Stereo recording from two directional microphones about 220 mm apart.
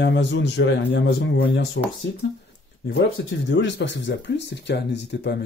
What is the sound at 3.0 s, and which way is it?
Speech, 55° left (ahead or behind).